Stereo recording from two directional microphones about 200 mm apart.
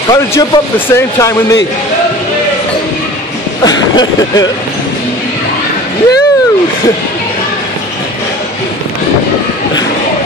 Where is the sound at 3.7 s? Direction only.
20° left (ahead or behind).